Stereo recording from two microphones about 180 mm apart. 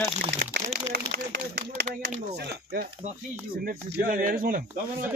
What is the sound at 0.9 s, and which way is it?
A man's voice, 55° right (ahead or behind).